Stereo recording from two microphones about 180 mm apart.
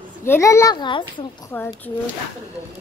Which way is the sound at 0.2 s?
15° left (ahead or behind).